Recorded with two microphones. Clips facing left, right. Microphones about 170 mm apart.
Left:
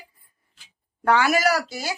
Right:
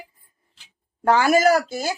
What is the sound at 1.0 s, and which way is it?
Speech, 40° right (ahead or behind).